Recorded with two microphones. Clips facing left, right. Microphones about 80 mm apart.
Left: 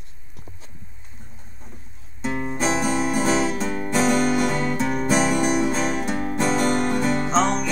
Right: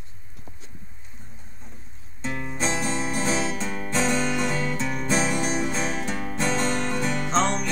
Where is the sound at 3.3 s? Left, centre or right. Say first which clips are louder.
Left 5 dB; left.